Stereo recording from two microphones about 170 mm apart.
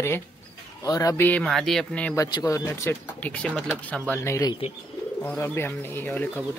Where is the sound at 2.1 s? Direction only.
20° left (ahead or behind).